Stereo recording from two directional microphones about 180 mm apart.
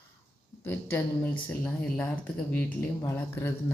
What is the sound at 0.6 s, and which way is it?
Speech, 10° left (ahead or behind).